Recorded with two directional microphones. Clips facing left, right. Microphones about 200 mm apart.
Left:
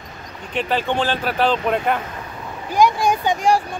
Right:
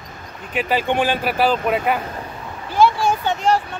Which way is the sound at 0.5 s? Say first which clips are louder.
Right 1 dB; 10° right (ahead or behind).